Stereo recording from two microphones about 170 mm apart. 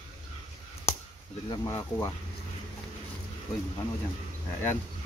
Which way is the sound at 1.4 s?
25° left (ahead or behind).